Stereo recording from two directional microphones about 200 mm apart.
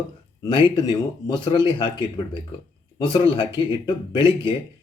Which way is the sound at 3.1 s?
25° left (ahead or behind).